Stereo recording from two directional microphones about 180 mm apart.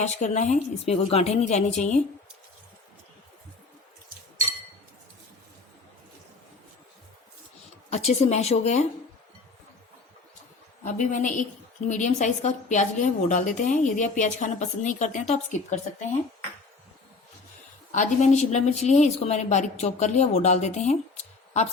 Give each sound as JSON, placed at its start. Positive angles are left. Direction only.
{"t": 0.0, "sound": "a woman's voice", "side_deg": 40}
{"t": 7.9, "sound": "a woman's voice", "side_deg": 40}
{"t": 10.8, "sound": "a woman's voice", "side_deg": 45}
{"t": 17.9, "sound": "a woman's voice", "side_deg": 40}